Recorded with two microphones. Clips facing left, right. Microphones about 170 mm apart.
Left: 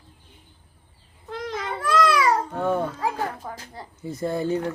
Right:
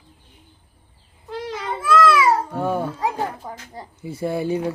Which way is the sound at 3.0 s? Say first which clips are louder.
Right 2 dB; 15° right (ahead or behind).